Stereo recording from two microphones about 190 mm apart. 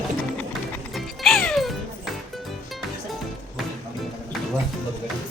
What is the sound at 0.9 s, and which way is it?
Music, centre (ahead or behind).